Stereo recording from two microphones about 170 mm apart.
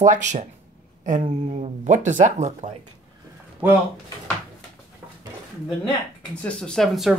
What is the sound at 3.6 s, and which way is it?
Speech, 10° right (ahead or behind).